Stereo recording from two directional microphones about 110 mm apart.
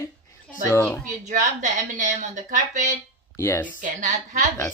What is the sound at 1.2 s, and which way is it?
Speech, 90° right.